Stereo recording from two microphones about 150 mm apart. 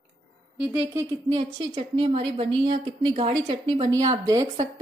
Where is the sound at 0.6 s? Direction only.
15° right (ahead or behind).